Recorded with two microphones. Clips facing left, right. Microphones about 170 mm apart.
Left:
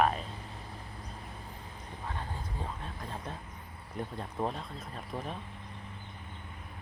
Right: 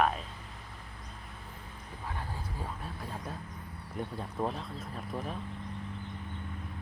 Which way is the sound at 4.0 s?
5° right (ahead or behind).